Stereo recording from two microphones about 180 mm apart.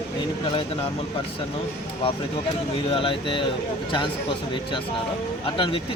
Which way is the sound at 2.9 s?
30° left (ahead or behind).